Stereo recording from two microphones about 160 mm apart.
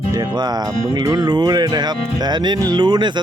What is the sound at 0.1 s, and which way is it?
Speech, 25° right (ahead or behind).